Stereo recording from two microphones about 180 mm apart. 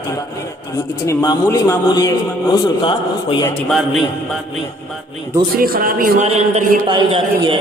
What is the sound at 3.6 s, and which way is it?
Speech, centre (ahead or behind).